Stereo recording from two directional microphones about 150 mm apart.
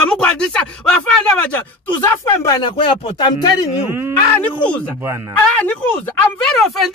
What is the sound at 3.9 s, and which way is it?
A man's voice, 15° right (ahead or behind).